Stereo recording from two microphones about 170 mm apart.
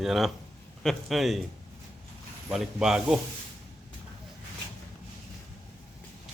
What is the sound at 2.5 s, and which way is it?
Speech, 5° right (ahead or behind).